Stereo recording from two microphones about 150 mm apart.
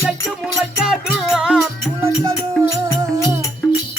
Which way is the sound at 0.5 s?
5° right (ahead or behind).